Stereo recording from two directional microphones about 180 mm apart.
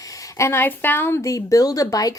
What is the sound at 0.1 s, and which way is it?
A woman's voice, 15° left (ahead or behind).